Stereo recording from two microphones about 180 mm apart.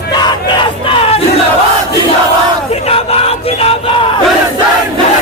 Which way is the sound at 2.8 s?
35° left (ahead or behind).